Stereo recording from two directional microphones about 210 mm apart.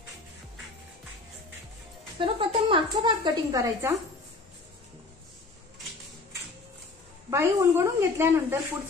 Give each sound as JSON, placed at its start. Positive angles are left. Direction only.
{"t": 2.1, "sound": "a woman's voice", "side_deg": -25}
{"t": 7.2, "sound": "a woman's voice", "side_deg": -15}